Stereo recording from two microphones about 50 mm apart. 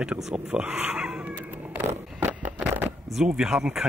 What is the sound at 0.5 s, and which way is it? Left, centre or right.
Speech, right.